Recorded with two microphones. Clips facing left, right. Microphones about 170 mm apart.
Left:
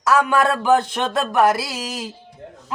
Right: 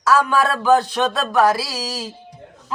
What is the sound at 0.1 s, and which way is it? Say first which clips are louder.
Speech: even; 20° left (ahead or behind).